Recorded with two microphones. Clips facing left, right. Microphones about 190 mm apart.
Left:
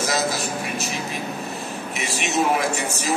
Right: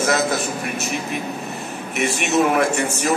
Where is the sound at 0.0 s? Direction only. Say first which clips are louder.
Right 4 dB; 55° right (ahead or behind).